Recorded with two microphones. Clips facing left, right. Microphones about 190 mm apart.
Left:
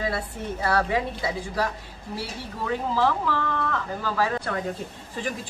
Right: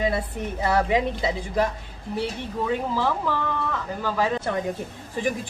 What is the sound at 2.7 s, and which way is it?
Speech, 15° right (ahead or behind).